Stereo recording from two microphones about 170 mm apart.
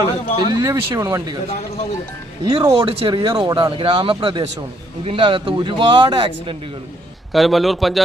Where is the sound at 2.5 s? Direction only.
20° right (ahead or behind).